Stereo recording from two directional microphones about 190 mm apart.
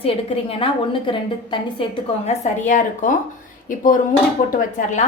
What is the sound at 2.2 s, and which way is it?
Speech, 40° left (ahead or behind).